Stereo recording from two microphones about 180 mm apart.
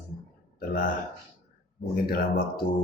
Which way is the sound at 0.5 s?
50° left (ahead or behind).